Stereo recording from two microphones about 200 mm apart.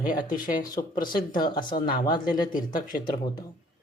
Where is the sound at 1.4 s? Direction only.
25° left (ahead or behind).